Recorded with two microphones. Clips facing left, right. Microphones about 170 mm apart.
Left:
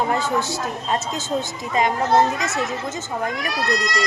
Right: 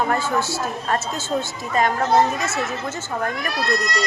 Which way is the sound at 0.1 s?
20° left (ahead or behind).